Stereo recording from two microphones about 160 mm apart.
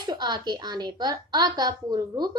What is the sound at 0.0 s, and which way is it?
A woman's voice, 25° right (ahead or behind).